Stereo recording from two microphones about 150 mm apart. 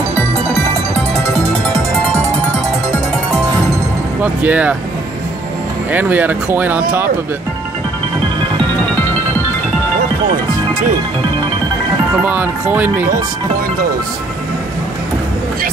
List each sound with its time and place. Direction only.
4.2 s speech: 10° right (ahead or behind)
5.9 s speech: 10° right (ahead or behind)
12.2 s speech: 10° right (ahead or behind)